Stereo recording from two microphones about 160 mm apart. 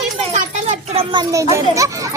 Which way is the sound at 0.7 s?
40° right (ahead or behind).